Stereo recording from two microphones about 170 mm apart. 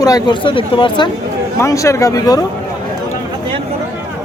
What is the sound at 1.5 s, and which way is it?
Speech, 20° left (ahead or behind).